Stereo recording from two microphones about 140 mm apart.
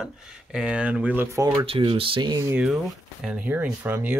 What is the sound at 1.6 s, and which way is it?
Speech, 40° right (ahead or behind).